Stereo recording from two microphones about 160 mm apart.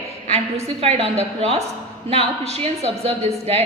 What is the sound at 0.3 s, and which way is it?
A woman's voice, 40° right (ahead or behind).